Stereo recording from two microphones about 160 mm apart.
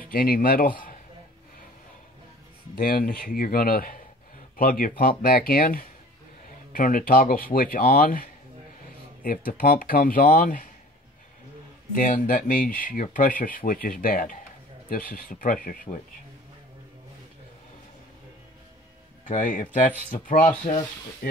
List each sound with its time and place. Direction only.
0.0 s speech: 65° left (ahead or behind)
2.7 s speech: 65° left (ahead or behind)
11.9 s speech: 55° left (ahead or behind)
19.2 s speech: 50° left (ahead or behind)